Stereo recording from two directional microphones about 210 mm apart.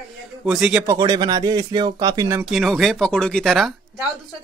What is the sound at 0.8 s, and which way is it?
Speech, 15° right (ahead or behind).